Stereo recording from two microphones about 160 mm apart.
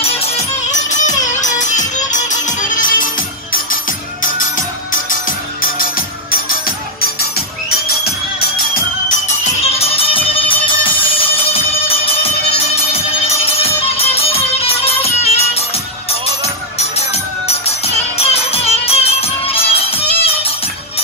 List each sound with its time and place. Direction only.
0.0 s music: 45° left (ahead or behind); by 8.8 s 75° left (ahead or behind)
9.8 s music: 35° left (ahead or behind)
16.7 s music: 40° left (ahead or behind)